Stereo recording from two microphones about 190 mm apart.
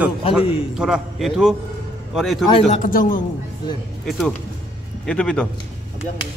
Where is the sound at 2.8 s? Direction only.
45° left (ahead or behind).